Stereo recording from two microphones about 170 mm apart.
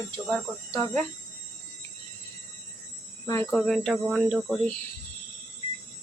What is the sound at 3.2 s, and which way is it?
Speech, 15° left (ahead or behind).